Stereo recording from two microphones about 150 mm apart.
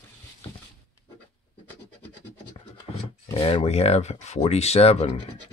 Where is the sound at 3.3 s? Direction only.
40° left (ahead or behind).